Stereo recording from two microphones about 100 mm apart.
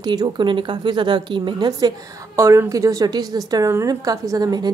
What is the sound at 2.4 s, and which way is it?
A woman's voice, 30° right (ahead or behind).